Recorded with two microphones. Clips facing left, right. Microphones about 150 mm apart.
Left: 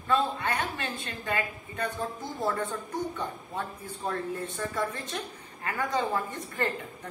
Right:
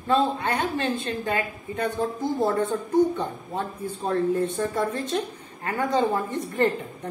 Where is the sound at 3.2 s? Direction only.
30° right (ahead or behind).